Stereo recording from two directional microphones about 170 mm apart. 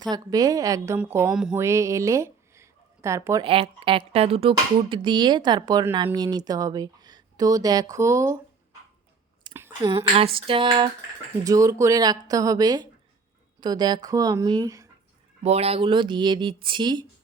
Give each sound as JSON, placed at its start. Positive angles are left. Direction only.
{"t": 0.1, "sound": "speech", "side_deg": -20}
{"t": 1.3, "sound": "mantra", "side_deg": -5}
{"t": 1.5, "sound": "speech", "side_deg": -15}
{"t": 3.4, "sound": "speech", "side_deg": -30}
{"t": 9.5, "sound": "a sound", "side_deg": -15}
{"t": 10.4, "sound": "speech", "side_deg": -30}
{"t": 15.4, "sound": "speech", "side_deg": -40}